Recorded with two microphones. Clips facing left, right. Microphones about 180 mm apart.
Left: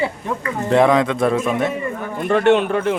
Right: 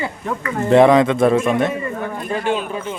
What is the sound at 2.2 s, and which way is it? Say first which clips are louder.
Speech: left 9 dB; 65° left (ahead or behind).